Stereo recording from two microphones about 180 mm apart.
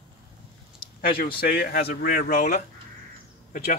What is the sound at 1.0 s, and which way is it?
Speech, 55° left (ahead or behind).